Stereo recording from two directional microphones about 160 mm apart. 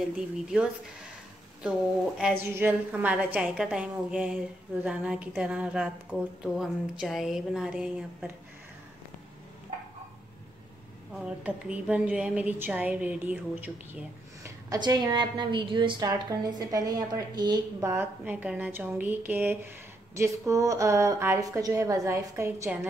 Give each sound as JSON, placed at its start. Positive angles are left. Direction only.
{"t": 1.6, "sound": "a woman's voice", "side_deg": -5}
{"t": 11.1, "sound": "a woman's voice", "side_deg": -5}
{"t": 14.7, "sound": "a woman's voice", "side_deg": -25}